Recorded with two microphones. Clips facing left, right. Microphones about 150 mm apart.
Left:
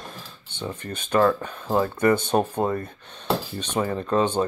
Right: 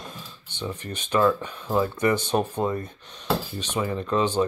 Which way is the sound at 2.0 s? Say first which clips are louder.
Left 3 dB; 50° left (ahead or behind).